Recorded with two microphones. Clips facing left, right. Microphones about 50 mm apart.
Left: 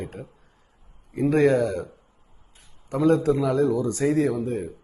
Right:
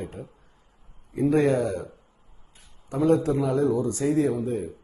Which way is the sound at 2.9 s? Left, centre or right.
Left.